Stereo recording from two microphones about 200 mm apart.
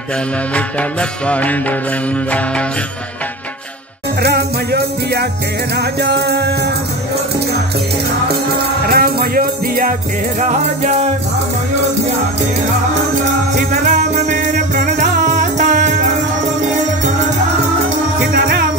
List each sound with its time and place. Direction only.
0.6 s music: 5° left (ahead or behind)
4.2 s music: 55° right (ahead or behind)
8.8 s music: 50° right (ahead or behind)
13.6 s music: 40° right (ahead or behind)